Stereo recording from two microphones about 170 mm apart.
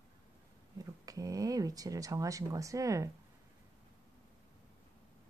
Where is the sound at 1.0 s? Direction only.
20° right (ahead or behind).